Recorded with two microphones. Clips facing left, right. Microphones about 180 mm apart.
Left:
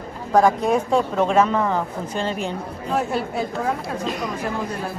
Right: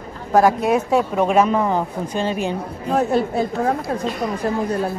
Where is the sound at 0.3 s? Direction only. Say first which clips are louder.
Right 2 dB; 5° right (ahead or behind).